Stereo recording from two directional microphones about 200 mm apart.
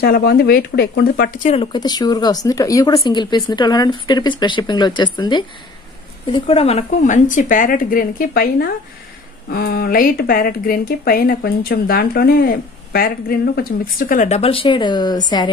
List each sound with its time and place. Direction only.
0.0 s speech: 50° left (ahead or behind)
1.5 s speech: 25° left (ahead or behind)